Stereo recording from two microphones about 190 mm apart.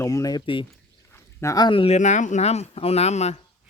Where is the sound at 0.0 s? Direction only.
15° left (ahead or behind).